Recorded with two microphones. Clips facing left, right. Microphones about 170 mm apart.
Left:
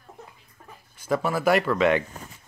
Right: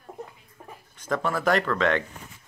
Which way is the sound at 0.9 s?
10° left (ahead or behind).